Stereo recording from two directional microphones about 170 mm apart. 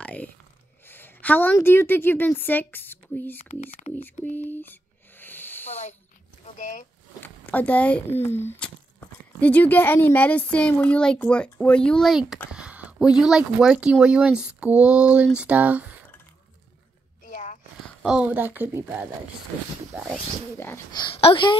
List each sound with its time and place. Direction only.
0.0 s a sound: 10° left (ahead or behind)
0.8 s a woman's voice: 10° left (ahead or behind)
3.3 s speech: 40° left (ahead or behind)
4.0 s a sound: 10° left (ahead or behind)
6.4 s speech: 45° left (ahead or behind)
7.2 s speech: 10° left (ahead or behind)
12.5 s a sound: 5° right (ahead or behind)
13.2 s speech: 5° right (ahead or behind)
17.2 s a sound: 50° left (ahead or behind)
18.0 s speech: 5° right (ahead or behind)
20.5 s speech: 15° left (ahead or behind)
20.9 s speech: 30° left (ahead or behind)